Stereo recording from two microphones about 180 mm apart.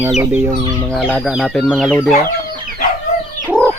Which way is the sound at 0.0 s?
10° right (ahead or behind).